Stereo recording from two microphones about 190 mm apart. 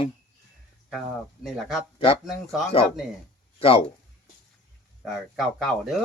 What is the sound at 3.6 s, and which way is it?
Speech, 30° left (ahead or behind).